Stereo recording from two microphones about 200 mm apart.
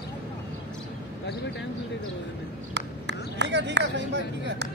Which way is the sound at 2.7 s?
60° right (ahead or behind).